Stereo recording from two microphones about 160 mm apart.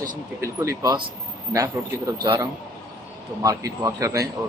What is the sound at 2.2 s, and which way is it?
A man's voice, 25° right (ahead or behind).